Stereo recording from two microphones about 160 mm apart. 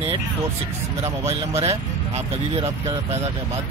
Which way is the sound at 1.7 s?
40° right (ahead or behind).